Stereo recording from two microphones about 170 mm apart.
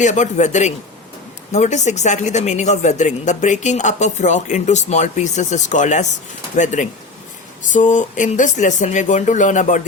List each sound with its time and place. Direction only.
0.0 s a woman's voice: 45° left (ahead or behind)